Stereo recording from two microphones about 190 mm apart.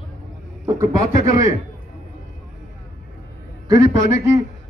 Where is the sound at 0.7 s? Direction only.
15° right (ahead or behind).